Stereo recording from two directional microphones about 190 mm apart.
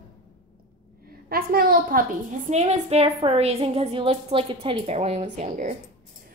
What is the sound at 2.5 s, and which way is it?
A woman's voice, 35° right (ahead or behind).